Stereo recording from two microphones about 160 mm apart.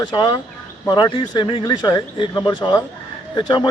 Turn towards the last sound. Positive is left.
turn(degrees=30)  # may be behind; listen again after turning